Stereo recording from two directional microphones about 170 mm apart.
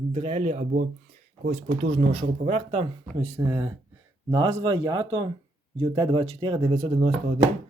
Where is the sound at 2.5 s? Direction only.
40° right (ahead or behind).